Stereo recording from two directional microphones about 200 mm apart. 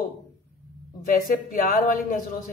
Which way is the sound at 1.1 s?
45° left (ahead or behind).